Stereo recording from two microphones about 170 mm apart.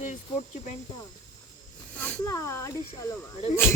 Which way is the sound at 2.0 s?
15° left (ahead or behind).